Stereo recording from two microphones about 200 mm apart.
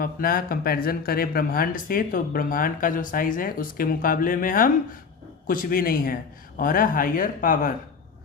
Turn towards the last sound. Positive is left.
turn(degrees=45)  # may be behind; listen again after turning